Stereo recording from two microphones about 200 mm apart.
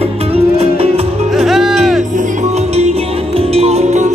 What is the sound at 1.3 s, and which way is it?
Music, centre (ahead or behind).